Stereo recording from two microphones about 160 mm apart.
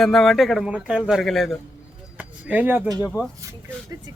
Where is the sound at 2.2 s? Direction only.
10° right (ahead or behind).